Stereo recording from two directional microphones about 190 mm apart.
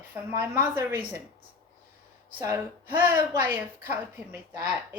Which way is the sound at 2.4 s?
15° right (ahead or behind).